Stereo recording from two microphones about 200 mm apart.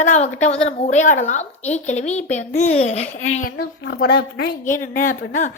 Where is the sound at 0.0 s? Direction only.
35° left (ahead or behind).